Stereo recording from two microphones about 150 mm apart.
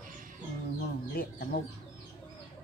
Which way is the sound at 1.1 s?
85° left.